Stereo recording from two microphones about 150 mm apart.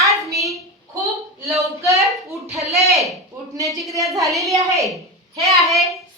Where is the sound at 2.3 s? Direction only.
Centre (ahead or behind).